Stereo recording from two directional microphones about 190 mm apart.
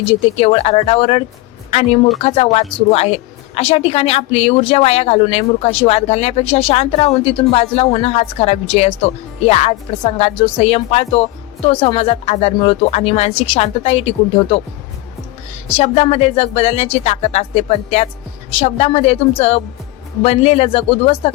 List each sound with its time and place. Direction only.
0.1 s a woman's voice: 30° left (ahead or behind)
15.8 s a woman's voice: 35° left (ahead or behind)